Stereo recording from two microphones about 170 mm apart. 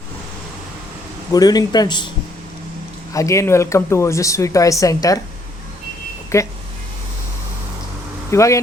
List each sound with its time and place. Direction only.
1.3 s speech: 20° left (ahead or behind)
3.1 s speech: 20° left (ahead or behind)
6.3 s speech: 15° left (ahead or behind)
8.3 s speech: 15° left (ahead or behind)